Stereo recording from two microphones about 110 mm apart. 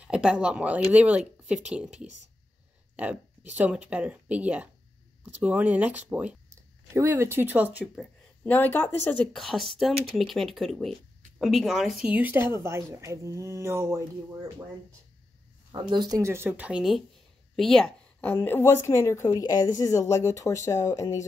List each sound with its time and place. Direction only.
0.0 s speech: 10° right (ahead or behind)
3.5 s speech: 15° right (ahead or behind)
6.5 s speech: 25° right (ahead or behind)
7.8 s speech: centre (ahead or behind)
8.5 s speech: 15° left (ahead or behind)
9.3 s speech: 5° left (ahead or behind); by 14.0 s 25° right (ahead or behind)
15.9 s speech: 40° right (ahead or behind)
16.2 s speech: 25° right (ahead or behind)
17.6 s speech: 5° left (ahead or behind)
18.2 s speech: 20° left (ahead or behind)